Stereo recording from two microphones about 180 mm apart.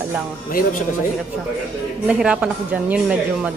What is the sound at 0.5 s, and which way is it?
Speech, 50° left (ahead or behind).